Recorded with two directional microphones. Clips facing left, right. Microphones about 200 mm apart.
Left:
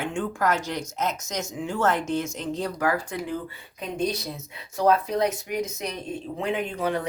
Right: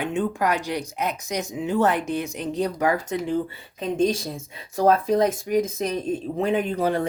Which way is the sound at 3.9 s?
45° right (ahead or behind).